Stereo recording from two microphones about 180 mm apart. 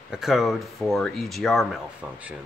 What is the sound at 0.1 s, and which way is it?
Speech, centre (ahead or behind).